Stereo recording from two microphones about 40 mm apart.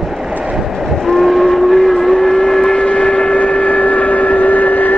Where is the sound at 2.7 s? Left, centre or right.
Left.